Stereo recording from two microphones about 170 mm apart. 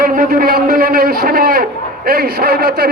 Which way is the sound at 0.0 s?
55° right (ahead or behind).